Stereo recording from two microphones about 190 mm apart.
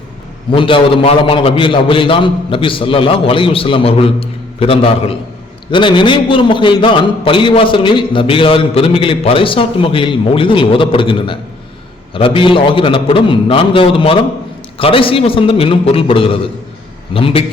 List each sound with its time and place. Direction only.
0.5 s a man's voice: 25° left (ahead or behind)